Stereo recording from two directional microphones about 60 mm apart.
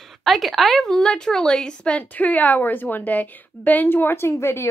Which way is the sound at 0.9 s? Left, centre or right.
Centre.